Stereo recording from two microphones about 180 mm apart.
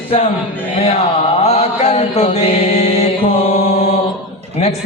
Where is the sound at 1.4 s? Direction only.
35° left (ahead or behind).